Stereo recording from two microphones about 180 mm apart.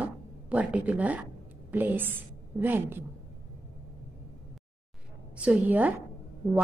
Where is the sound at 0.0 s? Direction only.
10° right (ahead or behind).